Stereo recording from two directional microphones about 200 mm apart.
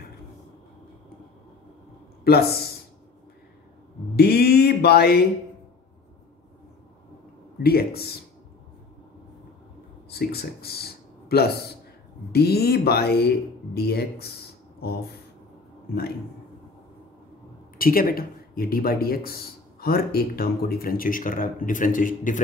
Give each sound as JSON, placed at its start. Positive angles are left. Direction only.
{"t": 2.2, "sound": "speech", "side_deg": 50}
{"t": 4.2, "sound": "speech", "side_deg": 50}
{"t": 7.6, "sound": "speech", "side_deg": 50}
{"t": 10.0, "sound": "speech", "side_deg": 50}
{"t": 17.7, "sound": "speech", "side_deg": 45}